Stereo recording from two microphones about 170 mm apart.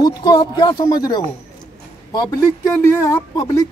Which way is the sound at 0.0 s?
25° left (ahead or behind).